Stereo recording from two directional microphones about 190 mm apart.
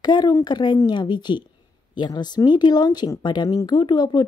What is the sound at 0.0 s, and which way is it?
Speech, 20° left (ahead or behind).